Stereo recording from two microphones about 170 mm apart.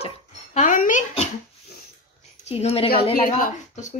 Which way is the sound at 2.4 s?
35° left (ahead or behind).